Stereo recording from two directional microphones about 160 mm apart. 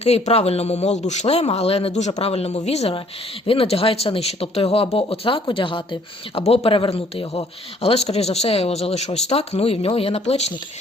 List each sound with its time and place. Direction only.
0.0 s a man's voice: 40° left (ahead or behind)